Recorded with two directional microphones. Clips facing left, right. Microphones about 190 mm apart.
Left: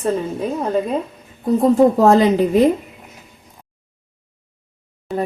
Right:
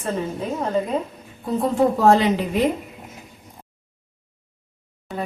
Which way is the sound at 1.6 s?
40° left (ahead or behind).